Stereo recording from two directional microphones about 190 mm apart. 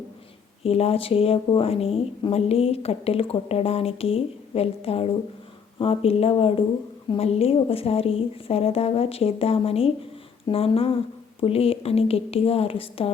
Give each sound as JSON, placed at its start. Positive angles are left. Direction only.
{"t": 0.6, "sound": "speech", "side_deg": 30}